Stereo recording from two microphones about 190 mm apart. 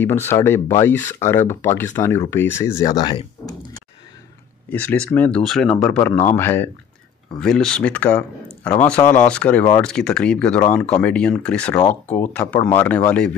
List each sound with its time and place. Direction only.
0.0 s speech: 10° left (ahead or behind)
4.6 s speech: 5° left (ahead or behind)